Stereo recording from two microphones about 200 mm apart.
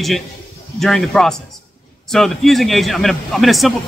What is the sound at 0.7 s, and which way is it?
A man's voice, centre (ahead or behind).